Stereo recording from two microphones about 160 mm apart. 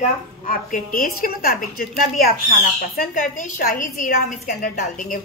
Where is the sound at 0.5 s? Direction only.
60° left (ahead or behind).